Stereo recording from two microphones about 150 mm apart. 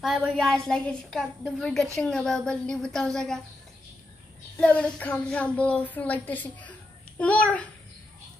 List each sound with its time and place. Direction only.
0.0 s a woman's voice: 5° right (ahead or behind)
4.6 s a woman's voice: 5° left (ahead or behind)